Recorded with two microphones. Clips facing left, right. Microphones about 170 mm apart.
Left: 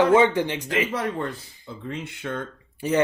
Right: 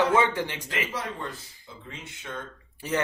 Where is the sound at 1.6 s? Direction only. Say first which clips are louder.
Left 11 dB; 60° left (ahead or behind).